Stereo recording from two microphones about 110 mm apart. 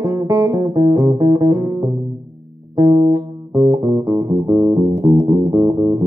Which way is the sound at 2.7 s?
30° right (ahead or behind).